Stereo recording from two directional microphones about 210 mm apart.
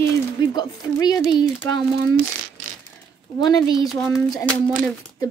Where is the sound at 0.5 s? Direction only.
20° left (ahead or behind).